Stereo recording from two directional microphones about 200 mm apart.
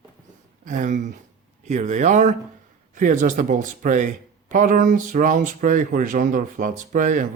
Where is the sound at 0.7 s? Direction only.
40° right (ahead or behind).